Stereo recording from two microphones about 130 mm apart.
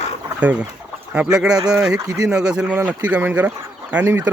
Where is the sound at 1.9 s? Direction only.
30° right (ahead or behind).